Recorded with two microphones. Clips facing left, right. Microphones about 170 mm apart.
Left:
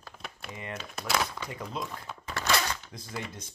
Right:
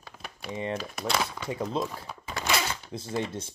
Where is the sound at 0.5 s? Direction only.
30° right (ahead or behind).